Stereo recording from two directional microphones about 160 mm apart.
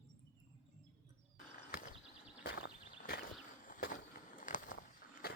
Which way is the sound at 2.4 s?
75° left (ahead or behind).